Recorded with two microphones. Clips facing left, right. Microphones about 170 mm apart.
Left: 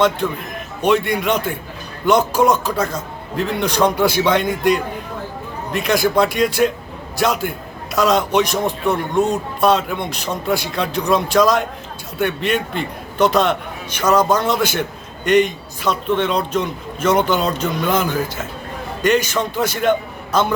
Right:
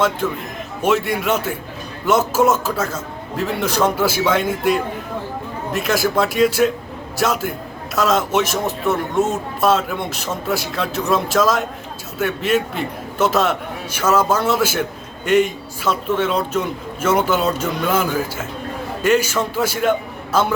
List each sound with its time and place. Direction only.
0.2 s a man's voice: 5° right (ahead or behind)